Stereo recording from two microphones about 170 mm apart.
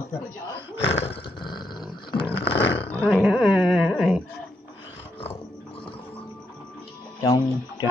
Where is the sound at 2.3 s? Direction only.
80° left.